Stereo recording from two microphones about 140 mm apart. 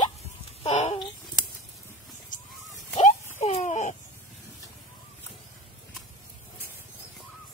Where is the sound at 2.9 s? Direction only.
50° left (ahead or behind).